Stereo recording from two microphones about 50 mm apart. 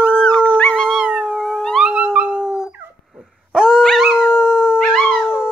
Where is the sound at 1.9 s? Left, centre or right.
Right.